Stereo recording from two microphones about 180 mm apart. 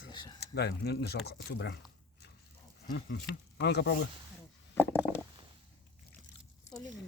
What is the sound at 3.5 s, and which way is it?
Speech, 70° left (ahead or behind).